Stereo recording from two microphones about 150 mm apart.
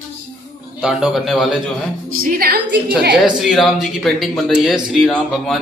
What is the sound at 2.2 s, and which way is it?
Speech, 85° right.